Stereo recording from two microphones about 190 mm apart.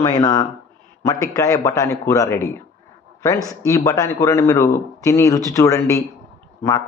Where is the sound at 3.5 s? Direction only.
15° left (ahead or behind).